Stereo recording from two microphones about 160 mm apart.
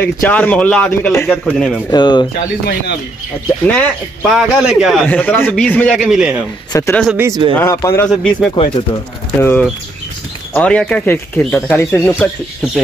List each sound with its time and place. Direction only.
0.0 s a man's voice: 10° left (ahead or behind)
1.9 s speech: 30° left (ahead or behind)
2.6 s speech: 80° left
3.6 s a man's voice: 10° left (ahead or behind)
5.0 s a man's voice: 10° left (ahead or behind); by 6.4 s 5° right (ahead or behind)
6.7 s speech: 20° left (ahead or behind)
7.2 s speech: 20° right (ahead or behind)
7.5 s a man's voice: 15° left (ahead or behind)
8.1 s a man's voice: centre (ahead or behind)
8.5 s speech: 30° left (ahead or behind)
9.4 s a man's voice: 15° left (ahead or behind)